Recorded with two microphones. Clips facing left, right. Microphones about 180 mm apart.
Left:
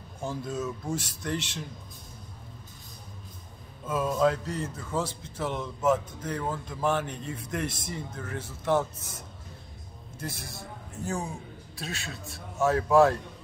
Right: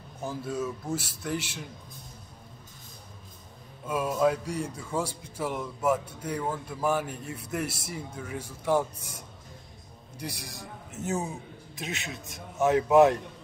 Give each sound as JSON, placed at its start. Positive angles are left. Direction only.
{"t": 0.2, "sound": "a man's voice", "side_deg": -5}
{"t": 3.8, "sound": "a man's voice", "side_deg": -10}